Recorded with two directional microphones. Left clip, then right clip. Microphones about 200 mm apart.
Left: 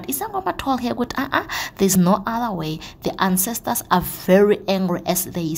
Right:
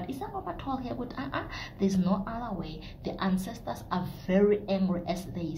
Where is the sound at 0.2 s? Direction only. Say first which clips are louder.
Left 16 dB; 50° left (ahead or behind).